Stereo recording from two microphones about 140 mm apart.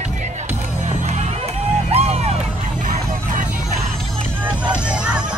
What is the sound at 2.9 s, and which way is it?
Music, 75° right (ahead or behind).